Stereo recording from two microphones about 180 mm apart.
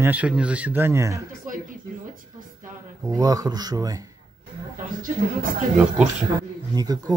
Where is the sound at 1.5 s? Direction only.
45° right (ahead or behind).